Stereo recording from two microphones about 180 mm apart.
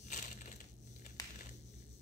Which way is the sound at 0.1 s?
45° left (ahead or behind).